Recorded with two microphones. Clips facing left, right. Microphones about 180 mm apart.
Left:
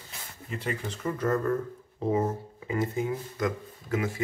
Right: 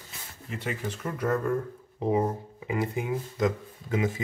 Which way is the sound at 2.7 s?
15° right (ahead or behind).